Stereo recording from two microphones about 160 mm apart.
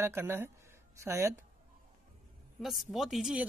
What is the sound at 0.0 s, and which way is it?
Speech, 15° right (ahead or behind).